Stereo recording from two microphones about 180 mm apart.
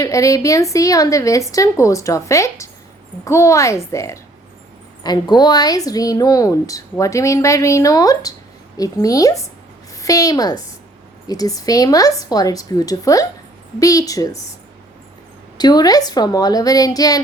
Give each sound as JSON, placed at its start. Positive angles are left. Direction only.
{"t": 0.0, "sound": "a woman's voice", "side_deg": 15}
{"t": 15.5, "sound": "a woman's voice", "side_deg": 20}